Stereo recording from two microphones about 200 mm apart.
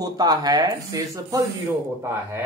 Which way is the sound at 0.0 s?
20° right (ahead or behind).